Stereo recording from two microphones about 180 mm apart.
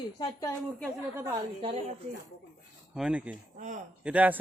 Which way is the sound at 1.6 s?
30° right (ahead or behind).